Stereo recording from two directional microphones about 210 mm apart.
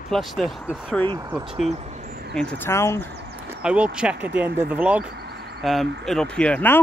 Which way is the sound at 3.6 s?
5° right (ahead or behind).